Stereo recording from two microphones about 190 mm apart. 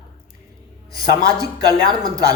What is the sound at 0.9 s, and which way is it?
Speech, 20° right (ahead or behind).